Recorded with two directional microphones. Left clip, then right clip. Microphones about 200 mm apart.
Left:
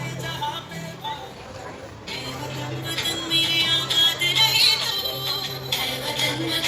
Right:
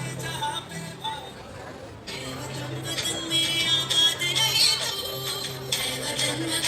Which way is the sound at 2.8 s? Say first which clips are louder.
Left 3 dB; 20° left (ahead or behind).